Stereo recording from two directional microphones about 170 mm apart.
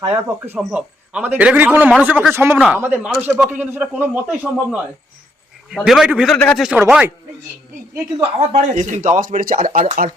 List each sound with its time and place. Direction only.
0.1 s a man's voice: 10° right (ahead or behind); by 6.7 s 5° left (ahead or behind)
6.7 s a man's voice: 10° right (ahead or behind)
8.4 s speech: 45° right (ahead or behind)